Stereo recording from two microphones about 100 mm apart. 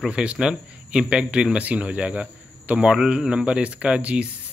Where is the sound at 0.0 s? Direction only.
10° right (ahead or behind).